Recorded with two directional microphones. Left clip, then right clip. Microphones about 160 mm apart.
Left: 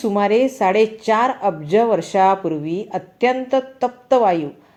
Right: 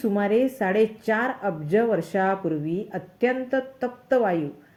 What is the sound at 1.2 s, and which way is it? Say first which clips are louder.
Speech: left 7 dB; 35° left (ahead or behind).